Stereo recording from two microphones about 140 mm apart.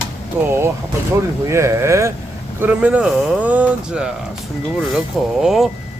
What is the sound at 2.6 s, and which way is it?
Speech, 10° right (ahead or behind).